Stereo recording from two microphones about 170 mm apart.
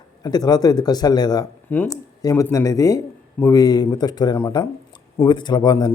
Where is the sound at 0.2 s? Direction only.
25° left (ahead or behind).